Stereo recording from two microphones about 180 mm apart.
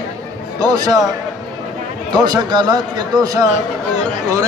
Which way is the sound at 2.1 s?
25° right (ahead or behind).